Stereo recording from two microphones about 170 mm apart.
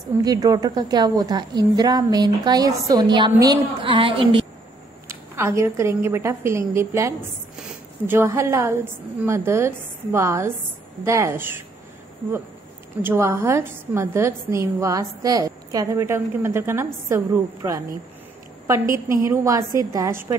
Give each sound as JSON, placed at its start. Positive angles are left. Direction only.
{"t": 0.2, "sound": "a woman's voice", "side_deg": -20}
{"t": 5.0, "sound": "a woman's voice", "side_deg": -15}
{"t": 7.5, "sound": "a sound", "side_deg": -5}
{"t": 8.2, "sound": "a woman's voice", "side_deg": -15}
{"t": 13.0, "sound": "a woman's voice", "side_deg": -15}